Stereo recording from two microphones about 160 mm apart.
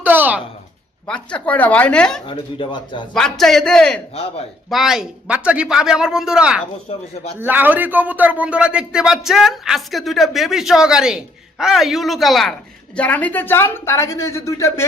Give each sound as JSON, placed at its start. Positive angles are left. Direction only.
{"t": 0.0, "sound": "a woman's voice", "side_deg": -10}
{"t": 1.0, "sound": "speech", "side_deg": 5}
{"t": 2.2, "sound": "speech", "side_deg": 30}
{"t": 3.1, "sound": "a man's voice", "side_deg": 5}
{"t": 4.1, "sound": "speech", "side_deg": 35}
{"t": 4.7, "sound": "a man's voice", "side_deg": 0}
{"t": 6.8, "sound": "speech", "side_deg": 40}
{"t": 7.3, "sound": "a man's voice", "side_deg": -10}